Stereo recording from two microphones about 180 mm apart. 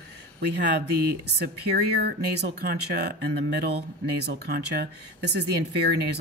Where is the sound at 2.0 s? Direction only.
65° right (ahead or behind).